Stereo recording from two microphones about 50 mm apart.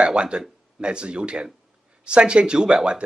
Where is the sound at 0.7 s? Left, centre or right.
Centre.